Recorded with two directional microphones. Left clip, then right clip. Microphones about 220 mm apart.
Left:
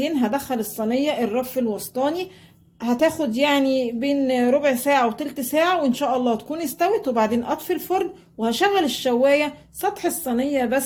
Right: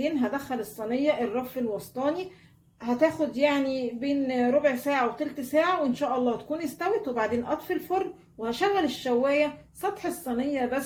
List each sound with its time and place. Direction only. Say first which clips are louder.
0.0 s a woman's voice: left 5 dB; 50° left (ahead or behind)